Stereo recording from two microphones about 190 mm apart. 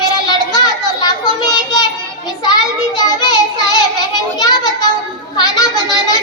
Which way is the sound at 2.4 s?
20° left (ahead or behind).